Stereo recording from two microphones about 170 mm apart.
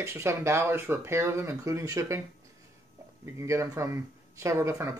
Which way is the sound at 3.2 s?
15° right (ahead or behind).